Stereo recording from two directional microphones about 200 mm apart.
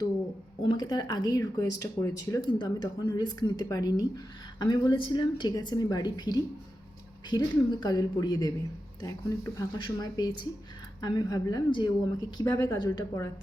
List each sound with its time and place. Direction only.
0.7 s a woman's voice: 20° left (ahead or behind)